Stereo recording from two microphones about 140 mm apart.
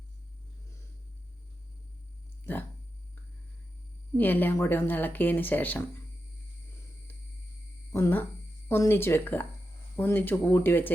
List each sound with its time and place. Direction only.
4.2 s speech: 15° left (ahead or behind)
7.9 s speech: 20° left (ahead or behind)